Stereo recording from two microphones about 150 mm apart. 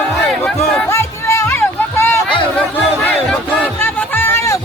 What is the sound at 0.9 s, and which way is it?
Music, 15° left (ahead or behind).